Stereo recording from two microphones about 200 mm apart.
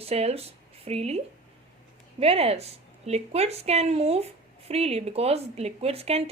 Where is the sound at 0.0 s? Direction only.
30° right (ahead or behind).